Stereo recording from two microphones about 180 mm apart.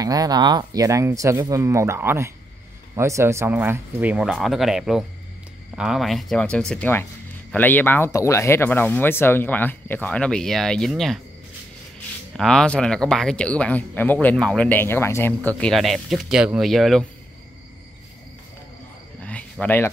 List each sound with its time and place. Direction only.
0.0 s speech: 20° right (ahead or behind); by 11.1 s centre (ahead or behind)
12.4 s speech: 5° left (ahead or behind)
19.1 s a sound: 5° left (ahead or behind)